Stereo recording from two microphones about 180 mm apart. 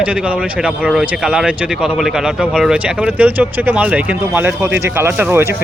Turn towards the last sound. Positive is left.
turn(degrees=-15)  # may be behind; listen again after turning